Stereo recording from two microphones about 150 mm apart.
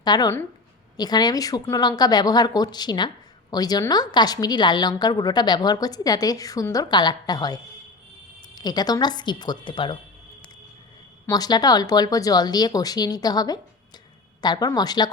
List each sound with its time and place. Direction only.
0.0 s a woman's voice: 25° left (ahead or behind)
11.3 s a woman's voice: 25° left (ahead or behind)